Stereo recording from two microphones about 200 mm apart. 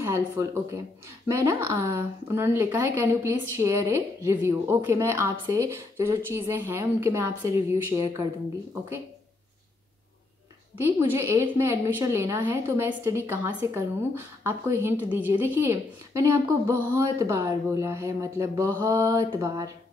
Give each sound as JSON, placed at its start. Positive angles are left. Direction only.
{"t": 0.0, "sound": "speech", "side_deg": -15}
{"t": 10.8, "sound": "speech", "side_deg": -10}